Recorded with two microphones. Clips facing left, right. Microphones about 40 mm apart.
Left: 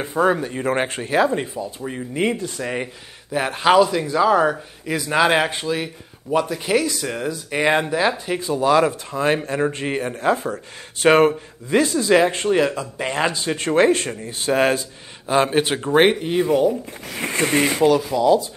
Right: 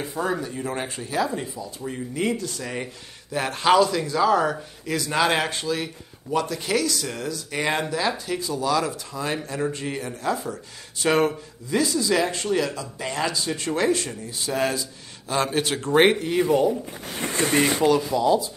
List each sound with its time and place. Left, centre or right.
0.0 s speech: left
1.8 s speech: left
15.2 s speech: left
17.4 s speech: left
17.8 s speech: centre